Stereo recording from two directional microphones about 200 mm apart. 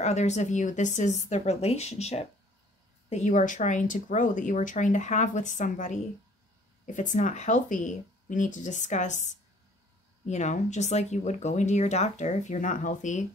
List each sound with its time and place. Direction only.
0.0 s speech: 35° left (ahead or behind)